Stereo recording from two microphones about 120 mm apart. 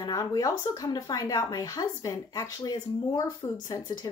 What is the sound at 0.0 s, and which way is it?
Speech, 35° left (ahead or behind).